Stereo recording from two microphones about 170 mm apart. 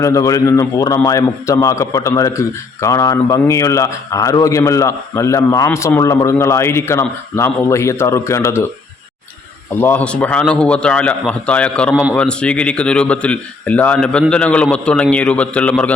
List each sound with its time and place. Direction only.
0.0 s a man's voice: 20° left (ahead or behind)
9.8 s a man's voice: 10° left (ahead or behind)